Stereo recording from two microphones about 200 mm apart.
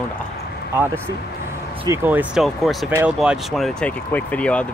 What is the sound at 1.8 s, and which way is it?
Speech, 10° right (ahead or behind).